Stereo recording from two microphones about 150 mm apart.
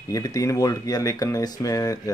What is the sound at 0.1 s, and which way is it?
Speech, 25° left (ahead or behind).